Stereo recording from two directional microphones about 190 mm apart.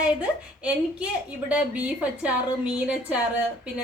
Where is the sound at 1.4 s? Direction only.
5° right (ahead or behind).